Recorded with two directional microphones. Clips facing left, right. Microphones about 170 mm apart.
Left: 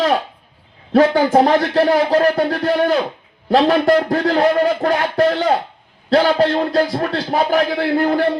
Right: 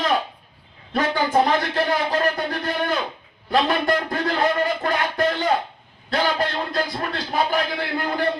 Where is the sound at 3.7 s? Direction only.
45° left (ahead or behind).